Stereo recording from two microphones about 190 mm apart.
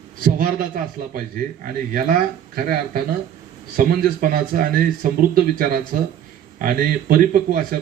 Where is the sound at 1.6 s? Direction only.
45° right (ahead or behind).